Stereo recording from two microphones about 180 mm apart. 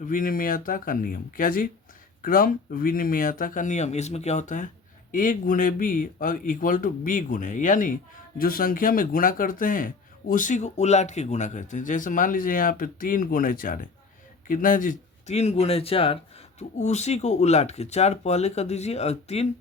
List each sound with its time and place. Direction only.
0.0 s speech: 50° left (ahead or behind)